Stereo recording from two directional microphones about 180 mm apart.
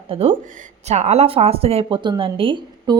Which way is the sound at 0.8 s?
40° right (ahead or behind).